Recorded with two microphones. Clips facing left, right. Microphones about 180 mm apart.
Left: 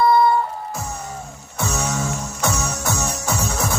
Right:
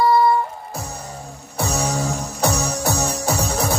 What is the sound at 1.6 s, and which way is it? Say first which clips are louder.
Music: right 2 dB; 35° right (ahead or behind).